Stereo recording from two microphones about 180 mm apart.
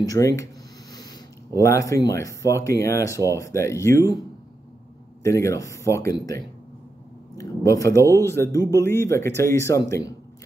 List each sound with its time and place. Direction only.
0.0 s speech: 20° left (ahead or behind)
1.6 s speech: 15° left (ahead or behind)
5.2 s speech: 15° left (ahead or behind)